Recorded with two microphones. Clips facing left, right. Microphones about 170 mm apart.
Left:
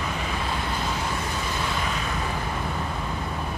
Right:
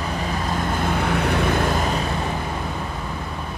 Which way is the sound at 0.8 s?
65° right (ahead or behind).